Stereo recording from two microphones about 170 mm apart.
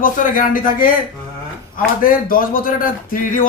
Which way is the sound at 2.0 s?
55° left (ahead or behind).